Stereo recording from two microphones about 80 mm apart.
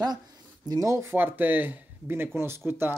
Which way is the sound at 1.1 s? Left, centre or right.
Right.